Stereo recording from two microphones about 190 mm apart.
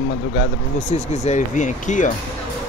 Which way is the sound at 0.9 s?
40° left (ahead or behind).